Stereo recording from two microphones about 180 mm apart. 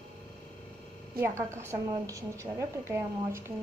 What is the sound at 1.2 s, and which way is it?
A woman's voice, 15° right (ahead or behind).